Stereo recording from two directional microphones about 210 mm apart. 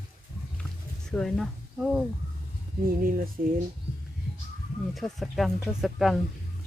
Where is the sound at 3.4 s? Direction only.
40° right (ahead or behind).